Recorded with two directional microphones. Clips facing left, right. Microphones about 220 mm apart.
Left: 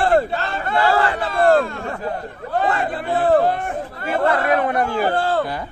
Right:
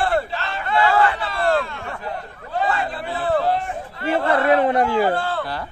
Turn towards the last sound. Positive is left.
turn(degrees=40)  # may be behind; listen again after turning